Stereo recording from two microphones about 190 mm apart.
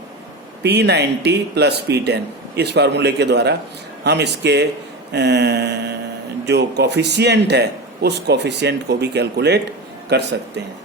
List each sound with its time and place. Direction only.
0.6 s speech: 60° right (ahead or behind)